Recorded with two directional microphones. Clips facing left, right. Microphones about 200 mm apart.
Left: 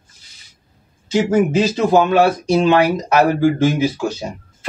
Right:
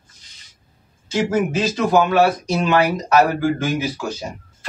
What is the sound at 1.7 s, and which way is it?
Speech, 25° left (ahead or behind).